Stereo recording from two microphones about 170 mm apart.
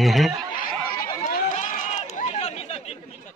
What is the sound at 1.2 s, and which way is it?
Chatter, 50° left (ahead or behind).